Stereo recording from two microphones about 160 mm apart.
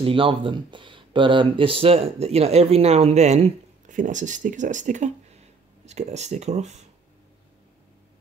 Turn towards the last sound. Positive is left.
turn(degrees=-45)  # may be behind; listen again after turning